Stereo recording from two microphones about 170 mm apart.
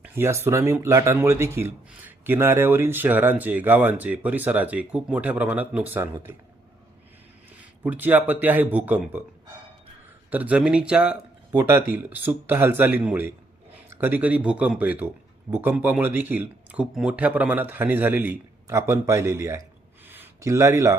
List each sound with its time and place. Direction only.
0.0 s speech: 15° right (ahead or behind)
7.6 s speech: 10° right (ahead or behind)
10.2 s speech: 10° right (ahead or behind)